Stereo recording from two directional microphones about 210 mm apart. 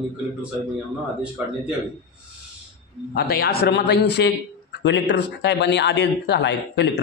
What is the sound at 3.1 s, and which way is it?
A man's voice, 50° left (ahead or behind).